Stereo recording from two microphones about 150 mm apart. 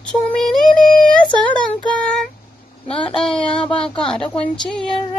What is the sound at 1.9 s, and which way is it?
Child singing, 5° left (ahead or behind).